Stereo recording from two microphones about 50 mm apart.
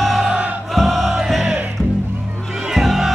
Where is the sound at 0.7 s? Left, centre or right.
Centre.